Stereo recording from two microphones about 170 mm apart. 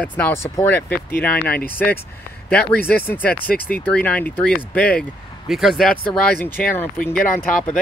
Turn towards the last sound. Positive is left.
turn(degrees=10)  # may be behind; listen again after turning